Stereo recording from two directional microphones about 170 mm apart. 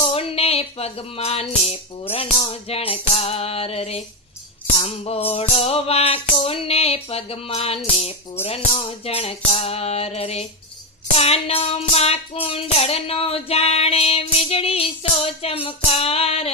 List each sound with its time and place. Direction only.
0.1 s music: 35° left (ahead or behind)